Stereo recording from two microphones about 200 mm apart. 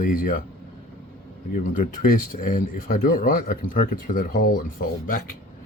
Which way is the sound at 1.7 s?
45° left (ahead or behind).